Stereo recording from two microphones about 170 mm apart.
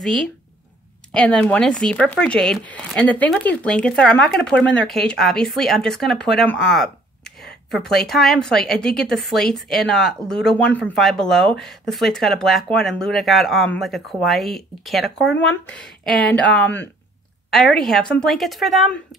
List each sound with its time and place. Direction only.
0.0 s speech: centre (ahead or behind)